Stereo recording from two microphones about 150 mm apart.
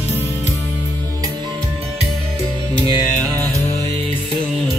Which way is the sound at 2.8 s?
25° right (ahead or behind).